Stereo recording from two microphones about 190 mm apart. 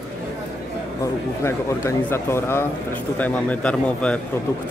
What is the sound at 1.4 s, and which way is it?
Speech, 15° left (ahead or behind).